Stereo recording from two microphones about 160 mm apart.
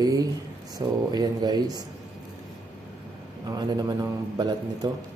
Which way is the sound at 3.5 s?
25° right (ahead or behind).